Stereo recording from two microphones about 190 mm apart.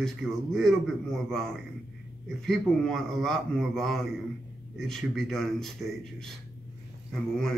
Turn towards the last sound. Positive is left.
turn(degrees=5)  # may be behind; listen again after turning